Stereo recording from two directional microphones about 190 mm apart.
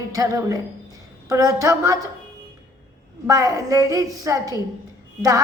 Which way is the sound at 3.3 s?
20° right (ahead or behind).